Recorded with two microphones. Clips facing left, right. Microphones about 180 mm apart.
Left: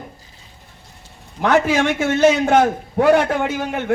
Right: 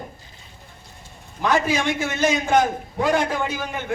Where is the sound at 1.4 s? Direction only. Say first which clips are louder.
Left 5 dB; 70° left (ahead or behind).